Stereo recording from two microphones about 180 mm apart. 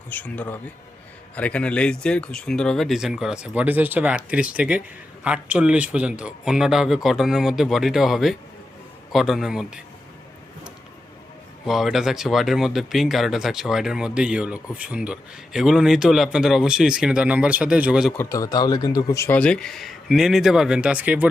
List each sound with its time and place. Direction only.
0.1 s speech: 10° left (ahead or behind)
11.6 s speech: centre (ahead or behind)
18.2 s speech: 15° left (ahead or behind); by 21.2 s 10° right (ahead or behind)